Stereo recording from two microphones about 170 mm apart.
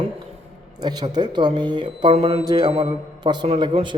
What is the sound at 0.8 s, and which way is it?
A man's voice, 25° right (ahead or behind).